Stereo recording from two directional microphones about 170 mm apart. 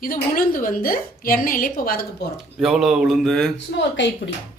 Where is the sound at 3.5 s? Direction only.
90° left.